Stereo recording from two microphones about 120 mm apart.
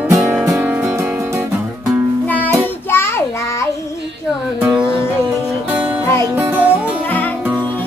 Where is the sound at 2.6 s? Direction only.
20° left (ahead or behind).